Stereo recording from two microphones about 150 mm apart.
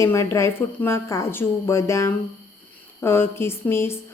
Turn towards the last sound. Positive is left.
turn(degrees=15)  # may be behind; listen again after turning